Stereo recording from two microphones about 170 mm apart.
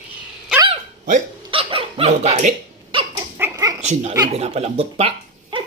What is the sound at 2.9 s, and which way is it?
Dog, 30° right (ahead or behind).